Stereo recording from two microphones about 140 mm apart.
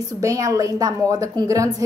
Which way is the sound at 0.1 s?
25° right (ahead or behind).